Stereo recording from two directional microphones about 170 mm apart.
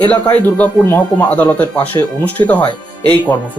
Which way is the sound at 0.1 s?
10° left (ahead or behind).